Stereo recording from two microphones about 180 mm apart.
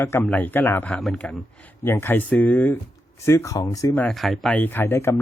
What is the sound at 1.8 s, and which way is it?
Speech, 15° left (ahead or behind).